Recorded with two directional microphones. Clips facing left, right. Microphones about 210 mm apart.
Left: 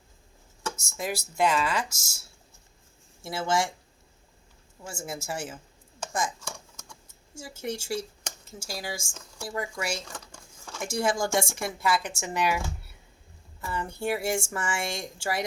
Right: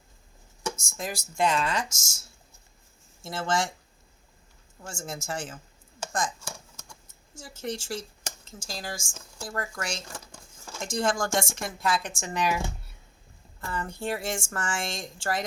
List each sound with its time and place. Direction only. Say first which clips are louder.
0.9 s speech: left 3 dB; 5° left (ahead or behind)
1.9 s speech: even; 25° right (ahead or behind)
3.2 s speech: left 1 dB; 10° left (ahead or behind)
4.9 s speech: even; 5° left (ahead or behind)
7.6 s speech: left 2 dB; 10° left (ahead or behind)
8.2 s a sound: left 1 dB; 5° left (ahead or behind)
9.1 s speech: left 1 dB; centre (ahead or behind)
10.8 s speech: even; 10° left (ahead or behind)
13.6 s speech: left 1 dB; 5° left (ahead or behind)